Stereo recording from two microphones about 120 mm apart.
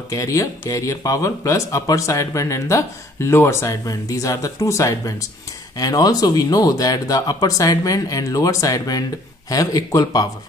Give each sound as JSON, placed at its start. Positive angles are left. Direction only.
{"t": 0.1, "sound": "speech", "side_deg": 25}